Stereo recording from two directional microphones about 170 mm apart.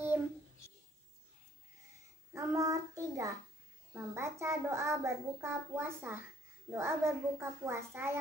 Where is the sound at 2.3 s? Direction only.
15° right (ahead or behind).